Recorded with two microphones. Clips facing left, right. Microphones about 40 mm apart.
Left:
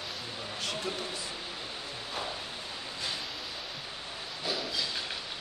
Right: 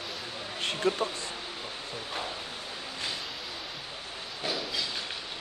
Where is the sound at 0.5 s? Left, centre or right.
Right.